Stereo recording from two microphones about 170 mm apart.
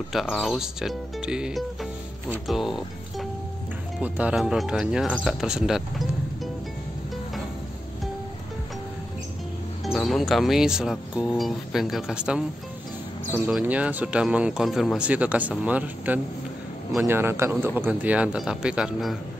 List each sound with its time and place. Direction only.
0.1 s speech: centre (ahead or behind)
9.9 s speech: centre (ahead or behind)
13.5 s speech: 10° right (ahead or behind)